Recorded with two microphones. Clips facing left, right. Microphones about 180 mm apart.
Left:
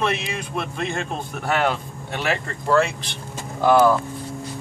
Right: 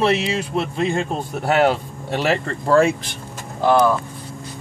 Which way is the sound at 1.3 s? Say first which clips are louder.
Right 5 dB; 35° right (ahead or behind).